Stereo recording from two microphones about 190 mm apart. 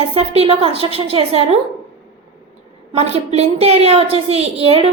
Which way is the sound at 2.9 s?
35° right (ahead or behind).